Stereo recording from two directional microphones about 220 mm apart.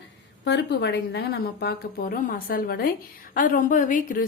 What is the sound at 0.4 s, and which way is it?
A woman's voice, 50° left (ahead or behind).